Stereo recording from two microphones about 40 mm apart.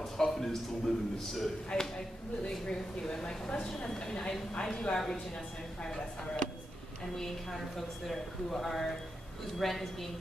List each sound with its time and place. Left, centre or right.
0.0 s a man's voice: centre
2.5 s a woman's voice: centre
4.9 s speech: centre
7.7 s a man's voice: centre